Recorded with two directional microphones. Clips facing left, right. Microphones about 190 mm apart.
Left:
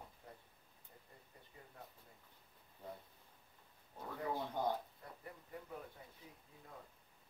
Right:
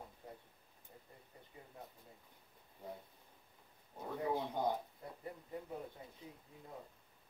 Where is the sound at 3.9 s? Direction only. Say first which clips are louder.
Right 4 dB; 15° right (ahead or behind).